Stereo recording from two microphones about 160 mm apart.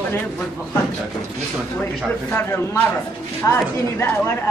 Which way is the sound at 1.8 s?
15° left (ahead or behind).